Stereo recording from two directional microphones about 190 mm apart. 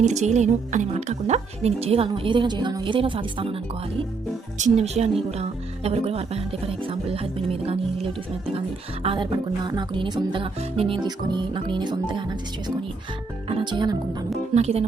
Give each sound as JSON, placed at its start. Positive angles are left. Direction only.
{"t": 0.0, "sound": "music", "side_deg": -35}
{"t": 4.5, "sound": "speech", "side_deg": -35}
{"t": 9.0, "sound": "music", "side_deg": -25}
{"t": 14.5, "sound": "speech", "side_deg": -35}